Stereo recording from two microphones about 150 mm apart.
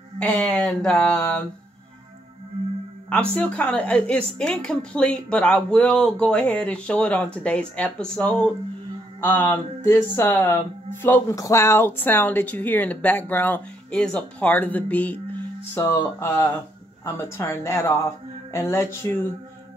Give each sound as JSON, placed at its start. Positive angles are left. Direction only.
{"t": 0.2, "sound": "speech", "side_deg": 10}
{"t": 3.1, "sound": "a woman's voice", "side_deg": 5}